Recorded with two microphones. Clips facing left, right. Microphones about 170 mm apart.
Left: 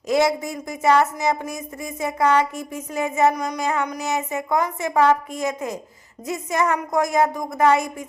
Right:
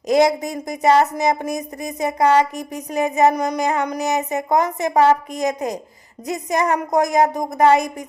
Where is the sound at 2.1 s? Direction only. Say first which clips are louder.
Right 3 dB; 30° right (ahead or behind).